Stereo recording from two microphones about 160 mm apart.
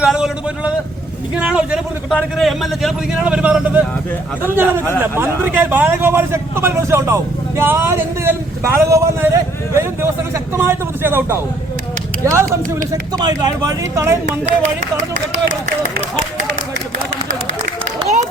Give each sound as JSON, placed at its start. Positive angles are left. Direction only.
{"t": 0.0, "sound": "a man's voice", "side_deg": -5}